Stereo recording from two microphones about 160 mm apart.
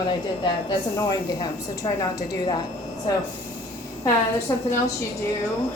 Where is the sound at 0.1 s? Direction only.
30° left (ahead or behind).